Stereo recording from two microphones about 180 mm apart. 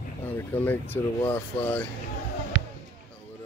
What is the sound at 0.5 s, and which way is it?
Speech, 10° left (ahead or behind).